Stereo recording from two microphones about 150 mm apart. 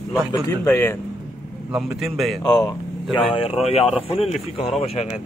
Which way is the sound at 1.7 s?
Centre (ahead or behind).